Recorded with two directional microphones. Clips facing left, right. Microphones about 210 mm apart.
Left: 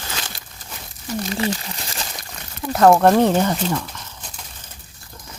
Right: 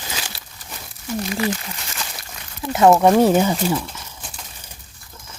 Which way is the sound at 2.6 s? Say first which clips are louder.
Even; 5° right (ahead or behind).